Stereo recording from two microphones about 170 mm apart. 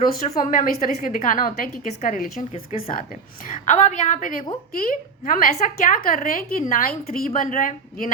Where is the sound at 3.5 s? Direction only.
45° left (ahead or behind).